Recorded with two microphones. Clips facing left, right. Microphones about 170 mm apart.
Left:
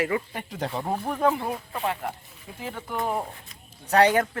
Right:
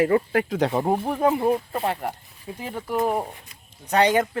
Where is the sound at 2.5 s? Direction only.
20° right (ahead or behind).